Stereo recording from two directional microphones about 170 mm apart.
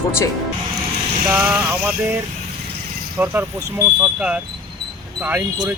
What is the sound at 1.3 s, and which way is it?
Speech, 10° right (ahead or behind).